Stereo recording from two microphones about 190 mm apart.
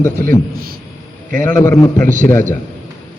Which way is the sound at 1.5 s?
15° left (ahead or behind).